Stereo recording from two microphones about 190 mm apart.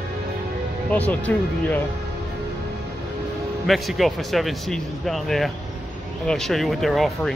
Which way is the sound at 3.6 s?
Centre (ahead or behind).